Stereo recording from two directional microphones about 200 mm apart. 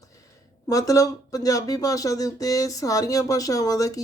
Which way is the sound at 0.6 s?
15° left (ahead or behind).